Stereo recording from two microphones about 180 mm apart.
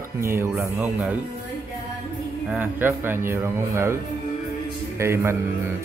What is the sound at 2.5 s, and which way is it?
Speech, 10° right (ahead or behind).